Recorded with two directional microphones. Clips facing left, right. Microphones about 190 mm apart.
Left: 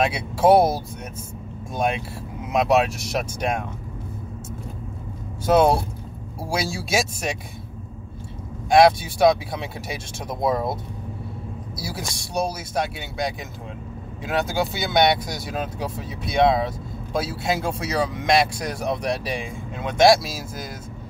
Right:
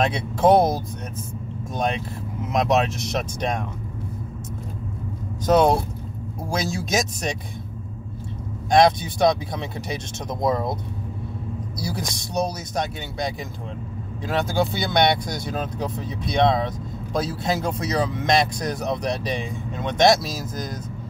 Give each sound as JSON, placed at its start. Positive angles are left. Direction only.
{"t": 0.0, "sound": "speech", "side_deg": 10}
{"t": 2.4, "sound": "speech", "side_deg": 10}
{"t": 5.5, "sound": "speech", "side_deg": 5}
{"t": 8.6, "sound": "speech", "side_deg": 5}
{"t": 11.8, "sound": "speech", "side_deg": 5}